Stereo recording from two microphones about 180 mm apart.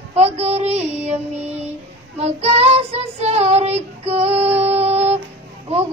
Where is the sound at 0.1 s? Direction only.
35° right (ahead or behind).